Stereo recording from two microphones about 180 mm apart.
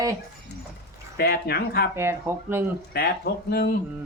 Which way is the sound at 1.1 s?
60° left (ahead or behind).